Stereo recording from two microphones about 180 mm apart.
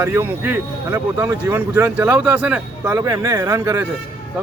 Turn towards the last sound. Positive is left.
turn(degrees=-15)  # may be behind; listen again after turning